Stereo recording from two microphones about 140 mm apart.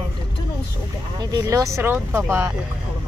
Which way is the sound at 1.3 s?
20° right (ahead or behind).